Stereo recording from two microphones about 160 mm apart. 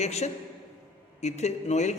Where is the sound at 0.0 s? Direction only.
45° left (ahead or behind).